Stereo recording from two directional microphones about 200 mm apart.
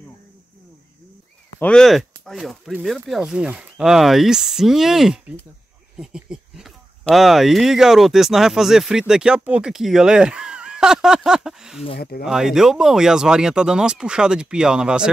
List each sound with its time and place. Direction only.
1.6 s speech: 5° left (ahead or behind)
12.0 s speech: 50° left (ahead or behind)
12.3 s speech: centre (ahead or behind)